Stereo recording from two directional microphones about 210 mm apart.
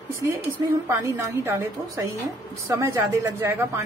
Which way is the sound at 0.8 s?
15° right (ahead or behind).